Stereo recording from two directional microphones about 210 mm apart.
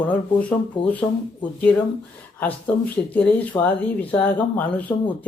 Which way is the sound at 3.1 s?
5° left (ahead or behind).